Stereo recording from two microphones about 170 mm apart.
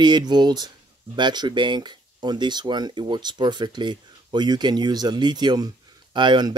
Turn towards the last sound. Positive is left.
turn(degrees=-25)  # may be behind; listen again after turning